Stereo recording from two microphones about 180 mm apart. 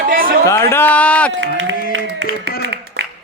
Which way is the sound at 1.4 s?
85° right.